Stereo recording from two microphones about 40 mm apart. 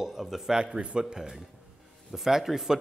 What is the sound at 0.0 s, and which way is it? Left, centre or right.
Speech, centre.